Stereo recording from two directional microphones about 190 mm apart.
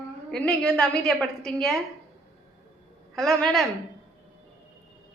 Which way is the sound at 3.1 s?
Centre (ahead or behind).